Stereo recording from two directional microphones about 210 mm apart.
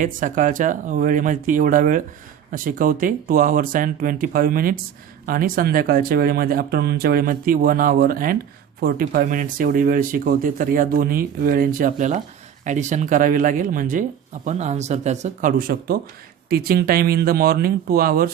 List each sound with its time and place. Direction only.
0.0 s speech: 40° right (ahead or behind)